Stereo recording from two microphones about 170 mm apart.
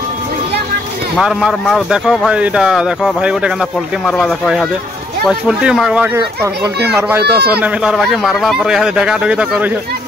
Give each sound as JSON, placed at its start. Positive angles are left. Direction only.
{"t": 1.1, "sound": "speech", "side_deg": -5}
{"t": 6.1, "sound": "speech", "side_deg": -20}
{"t": 7.6, "sound": "speech", "side_deg": 0}